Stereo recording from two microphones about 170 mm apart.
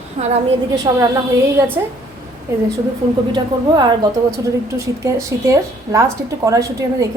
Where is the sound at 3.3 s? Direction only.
25° right (ahead or behind).